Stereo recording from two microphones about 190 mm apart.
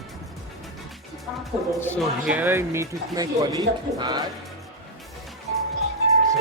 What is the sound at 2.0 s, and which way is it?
Speech, 5° right (ahead or behind).